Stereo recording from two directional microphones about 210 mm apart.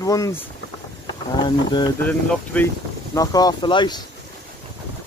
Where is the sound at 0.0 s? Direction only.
15° left (ahead or behind).